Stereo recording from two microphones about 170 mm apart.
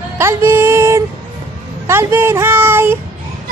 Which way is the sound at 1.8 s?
15° right (ahead or behind).